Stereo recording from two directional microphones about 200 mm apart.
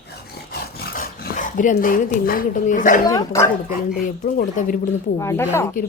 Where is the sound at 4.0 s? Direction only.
45° left (ahead or behind).